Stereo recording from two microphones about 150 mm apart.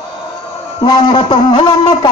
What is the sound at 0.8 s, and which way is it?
A man's voice, 30° left (ahead or behind).